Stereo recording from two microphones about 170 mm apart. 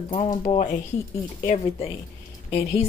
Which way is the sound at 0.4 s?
40° left (ahead or behind).